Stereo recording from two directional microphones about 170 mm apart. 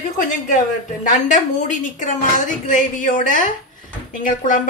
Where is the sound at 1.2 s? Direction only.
50° left (ahead or behind).